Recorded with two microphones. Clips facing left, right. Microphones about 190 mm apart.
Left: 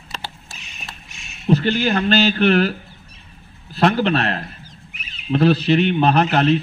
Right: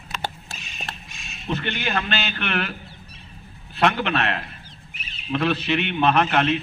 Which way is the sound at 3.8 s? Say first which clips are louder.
Left 4 dB; 35° left (ahead or behind).